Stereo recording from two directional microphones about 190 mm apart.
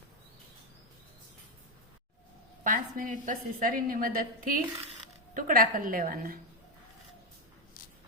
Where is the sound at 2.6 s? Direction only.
45° right (ahead or behind).